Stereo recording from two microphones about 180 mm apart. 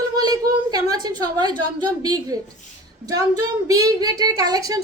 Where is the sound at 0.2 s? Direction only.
20° right (ahead or behind).